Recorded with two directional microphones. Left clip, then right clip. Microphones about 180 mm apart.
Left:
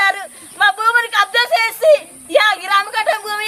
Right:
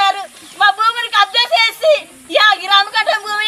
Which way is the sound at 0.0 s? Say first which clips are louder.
Right 1 dB; 15° left (ahead or behind).